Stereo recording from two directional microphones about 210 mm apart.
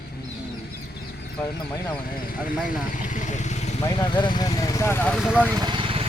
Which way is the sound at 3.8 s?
20° left (ahead or behind).